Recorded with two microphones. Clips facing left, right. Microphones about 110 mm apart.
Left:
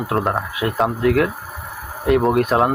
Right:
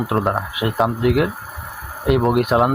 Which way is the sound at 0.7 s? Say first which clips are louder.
Even; 10° right (ahead or behind).